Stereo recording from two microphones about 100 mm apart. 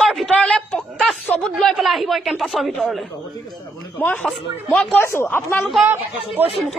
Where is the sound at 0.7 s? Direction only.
Centre (ahead or behind).